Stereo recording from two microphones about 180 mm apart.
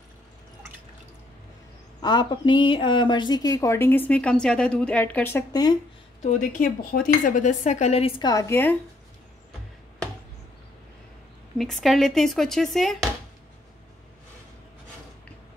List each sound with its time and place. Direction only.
2.0 s speech: 25° left (ahead or behind)
6.2 s a woman's voice: 45° left (ahead or behind)
8.2 s a woman's voice: 20° left (ahead or behind)
11.5 s speech: centre (ahead or behind)